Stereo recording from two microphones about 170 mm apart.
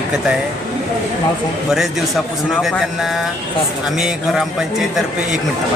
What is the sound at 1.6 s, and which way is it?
A man's voice, centre (ahead or behind).